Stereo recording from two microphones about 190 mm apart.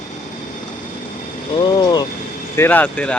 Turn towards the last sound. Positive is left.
turn(degrees=10)  # may be behind; listen again after turning